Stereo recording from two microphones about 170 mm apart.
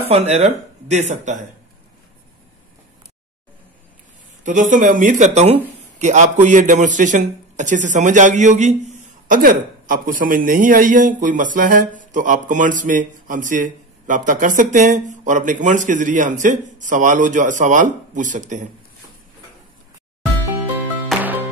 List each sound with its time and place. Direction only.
0.1 s a man's voice: 40° right (ahead or behind)
4.4 s a man's voice: 50° right (ahead or behind)
21.1 s music: 10° right (ahead or behind)